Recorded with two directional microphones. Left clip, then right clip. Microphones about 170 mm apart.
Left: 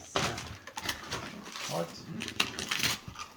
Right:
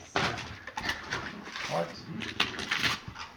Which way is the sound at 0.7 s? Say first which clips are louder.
Right 3 dB; 50° left (ahead or behind).